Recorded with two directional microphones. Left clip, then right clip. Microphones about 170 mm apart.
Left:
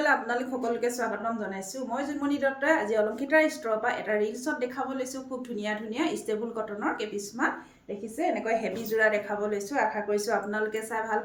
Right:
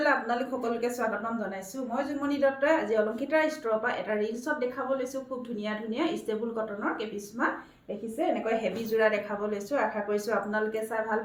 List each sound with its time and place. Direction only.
0.0 s a woman's voice: 20° left (ahead or behind)
2.2 s a woman's voice: 20° left (ahead or behind)